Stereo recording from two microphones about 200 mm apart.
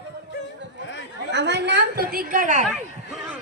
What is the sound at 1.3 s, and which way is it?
A woman's voice, 60° right (ahead or behind).